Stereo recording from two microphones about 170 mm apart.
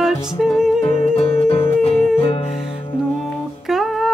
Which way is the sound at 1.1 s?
35° left (ahead or behind).